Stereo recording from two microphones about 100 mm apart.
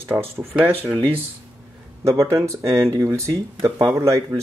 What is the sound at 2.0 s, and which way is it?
Speech, 30° right (ahead or behind).